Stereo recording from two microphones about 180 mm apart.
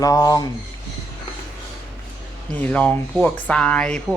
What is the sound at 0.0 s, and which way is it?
Speech, 20° left (ahead or behind).